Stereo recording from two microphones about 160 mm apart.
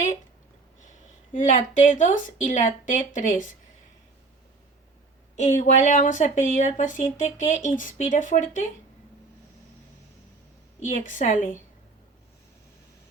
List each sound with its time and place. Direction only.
0.9 s a woman's voice: 50° left (ahead or behind)
5.4 s speech: 50° left (ahead or behind)
10.8 s speech: 50° left (ahead or behind)